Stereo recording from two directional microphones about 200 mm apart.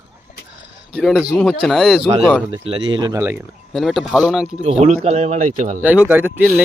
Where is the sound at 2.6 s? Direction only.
25° right (ahead or behind).